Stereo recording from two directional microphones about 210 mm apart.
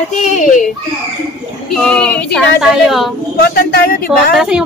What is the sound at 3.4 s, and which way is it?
Speech, 45° left (ahead or behind).